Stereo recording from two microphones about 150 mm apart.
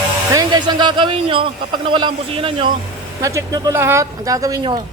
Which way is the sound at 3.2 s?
20° right (ahead or behind).